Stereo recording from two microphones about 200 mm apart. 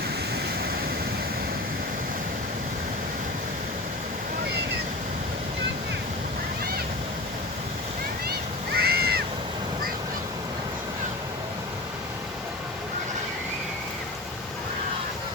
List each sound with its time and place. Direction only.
8.7 s crow: 50° right (ahead or behind)